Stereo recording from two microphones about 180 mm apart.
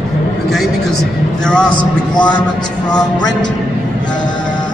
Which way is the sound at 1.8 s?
25° left (ahead or behind).